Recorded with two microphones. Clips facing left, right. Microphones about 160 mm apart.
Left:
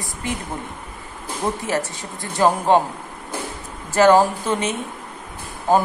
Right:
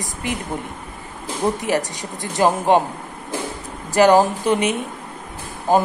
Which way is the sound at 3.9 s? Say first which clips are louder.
Even; 15° right (ahead or behind).